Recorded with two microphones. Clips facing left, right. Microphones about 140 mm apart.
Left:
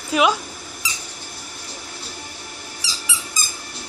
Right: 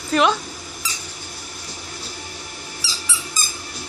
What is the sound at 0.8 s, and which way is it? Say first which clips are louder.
Squeak: even; 15° left (ahead or behind).